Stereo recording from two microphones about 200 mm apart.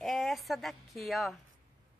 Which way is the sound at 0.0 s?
Centre (ahead or behind).